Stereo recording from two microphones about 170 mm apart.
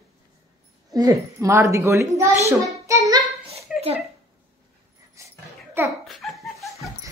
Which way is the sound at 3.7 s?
5° right (ahead or behind).